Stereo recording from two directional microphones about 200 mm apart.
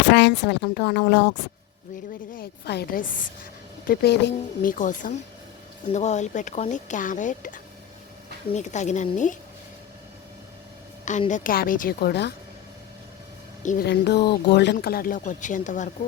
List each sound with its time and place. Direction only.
0.1 s speech: 60° left (ahead or behind)
2.3 s a woman's voice: 50° left (ahead or behind)
3.8 s speech: 55° left (ahead or behind)
4.7 s speech: 40° left (ahead or behind)
11.3 s a woman's voice: 40° left (ahead or behind)
13.6 s a woman's voice: 40° left (ahead or behind)
13.8 s speech: 55° left (ahead or behind); by 15.9 s 40° left (ahead or behind)